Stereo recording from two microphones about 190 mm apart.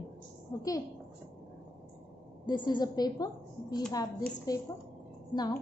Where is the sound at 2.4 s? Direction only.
25° left (ahead or behind).